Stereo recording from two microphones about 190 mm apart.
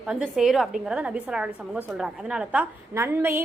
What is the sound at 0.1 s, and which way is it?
A woman's voice, 5° right (ahead or behind).